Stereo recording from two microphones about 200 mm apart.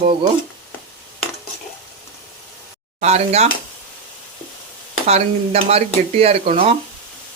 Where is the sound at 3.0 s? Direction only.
30° right (ahead or behind).